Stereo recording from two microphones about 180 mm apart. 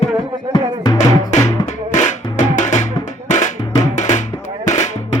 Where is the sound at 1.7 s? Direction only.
40° left (ahead or behind).